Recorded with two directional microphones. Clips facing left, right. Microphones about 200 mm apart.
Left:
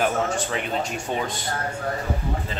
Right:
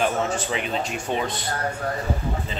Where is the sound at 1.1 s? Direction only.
5° left (ahead or behind).